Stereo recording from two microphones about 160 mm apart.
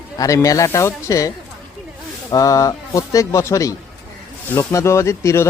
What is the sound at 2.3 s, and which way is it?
Speech, 20° left (ahead or behind).